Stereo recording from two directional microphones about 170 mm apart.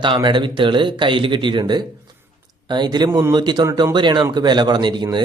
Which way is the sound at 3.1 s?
15° right (ahead or behind).